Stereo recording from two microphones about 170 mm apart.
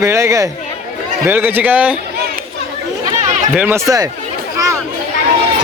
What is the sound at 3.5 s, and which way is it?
Speech, 10° right (ahead or behind).